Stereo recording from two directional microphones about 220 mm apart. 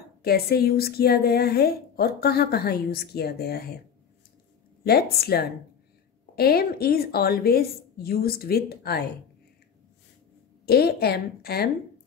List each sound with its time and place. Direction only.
0.2 s a woman's voice: 45° left (ahead or behind)
4.8 s a woman's voice: 45° left (ahead or behind)
10.6 s a woman's voice: 45° left (ahead or behind)